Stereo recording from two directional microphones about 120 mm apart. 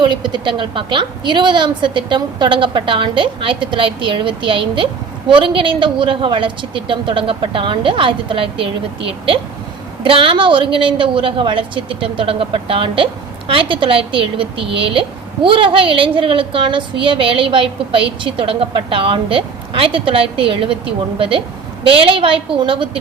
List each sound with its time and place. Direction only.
0.0 s a woman's voice: 40° right (ahead or behind)